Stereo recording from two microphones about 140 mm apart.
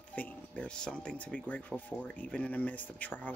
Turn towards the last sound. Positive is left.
turn(degrees=10)  # may be behind; listen again after turning